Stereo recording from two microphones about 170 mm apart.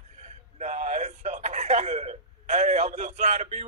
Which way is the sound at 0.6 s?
45° right (ahead or behind).